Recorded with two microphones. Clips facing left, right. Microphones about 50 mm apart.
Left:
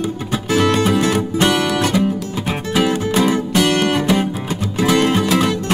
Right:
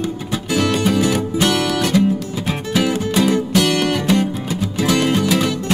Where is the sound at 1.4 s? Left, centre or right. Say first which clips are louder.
Left 2 dB; left.